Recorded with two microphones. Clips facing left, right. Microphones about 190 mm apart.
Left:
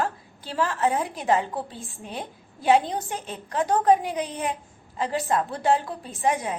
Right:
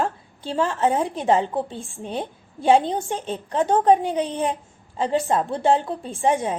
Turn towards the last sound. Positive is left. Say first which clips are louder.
# right 4 dB
turn(degrees=-30)  # may be behind; listen again after turning